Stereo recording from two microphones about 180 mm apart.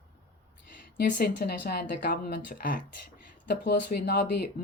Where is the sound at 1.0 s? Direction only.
50° left (ahead or behind).